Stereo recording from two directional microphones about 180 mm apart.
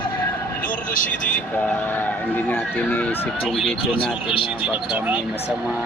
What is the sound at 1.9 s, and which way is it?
Speech, 10° left (ahead or behind).